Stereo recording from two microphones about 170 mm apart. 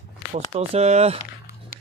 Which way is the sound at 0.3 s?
35° right (ahead or behind).